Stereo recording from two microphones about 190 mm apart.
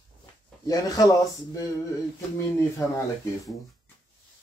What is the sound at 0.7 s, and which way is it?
Speech, 20° left (ahead or behind).